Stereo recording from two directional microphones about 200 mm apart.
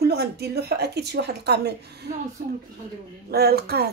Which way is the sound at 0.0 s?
55° right (ahead or behind).